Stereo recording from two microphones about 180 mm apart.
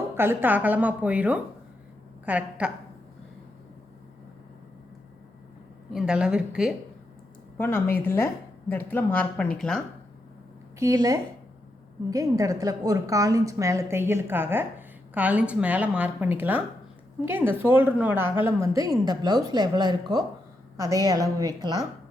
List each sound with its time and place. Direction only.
0.2 s a woman's voice: 10° right (ahead or behind)
5.9 s a woman's voice: 5° right (ahead or behind)
7.6 s a woman's voice: 10° left (ahead or behind)
10.8 s a woman's voice: 20° right (ahead or behind)